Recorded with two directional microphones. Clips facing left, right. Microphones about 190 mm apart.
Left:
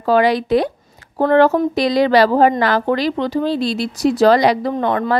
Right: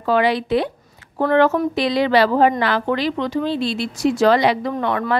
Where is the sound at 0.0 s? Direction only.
40° left (ahead or behind).